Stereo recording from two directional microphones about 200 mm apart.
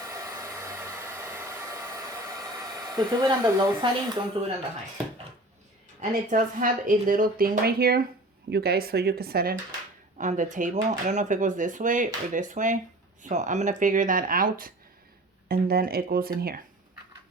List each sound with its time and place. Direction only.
0.0 s hair dryer: 15° right (ahead or behind)
6.0 s speech: 45° right (ahead or behind)
10.2 s speech: 40° right (ahead or behind)